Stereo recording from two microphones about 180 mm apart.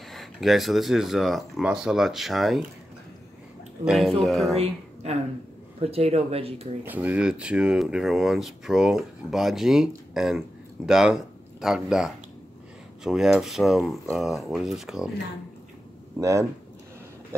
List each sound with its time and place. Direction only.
0.1 s speech: centre (ahead or behind)
3.8 s speech: centre (ahead or behind)
5.8 s speech: 35° right (ahead or behind)
6.8 s speech: 10° right (ahead or behind)
16.2 s speech: 15° right (ahead or behind)